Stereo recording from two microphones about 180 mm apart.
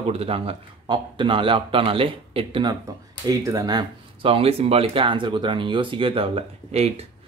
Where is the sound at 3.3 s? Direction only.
20° right (ahead or behind); by 7.1 s 35° right (ahead or behind).